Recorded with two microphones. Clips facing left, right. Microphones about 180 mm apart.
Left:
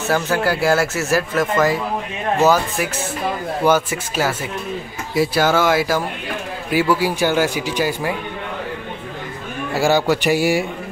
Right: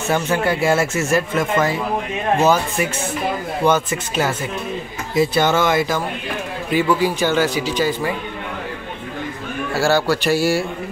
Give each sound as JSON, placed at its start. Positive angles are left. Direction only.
{"t": 0.1, "sound": "speech", "side_deg": 0}
{"t": 9.8, "sound": "speech", "side_deg": 15}